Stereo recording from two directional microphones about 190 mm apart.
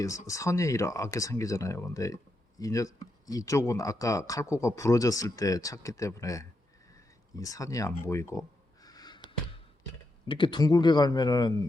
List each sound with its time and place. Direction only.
0.0 s speech: 15° left (ahead or behind)
8.0 s a sound: 15° left (ahead or behind)
10.2 s speech: 25° left (ahead or behind)